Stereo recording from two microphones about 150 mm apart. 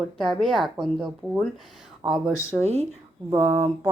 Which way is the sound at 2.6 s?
45° right (ahead or behind).